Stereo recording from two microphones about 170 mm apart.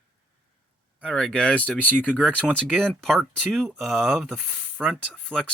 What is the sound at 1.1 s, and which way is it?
Speech, 5° left (ahead or behind).